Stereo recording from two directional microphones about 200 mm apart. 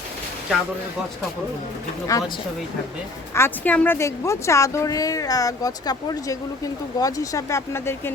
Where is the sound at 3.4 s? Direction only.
10° left (ahead or behind).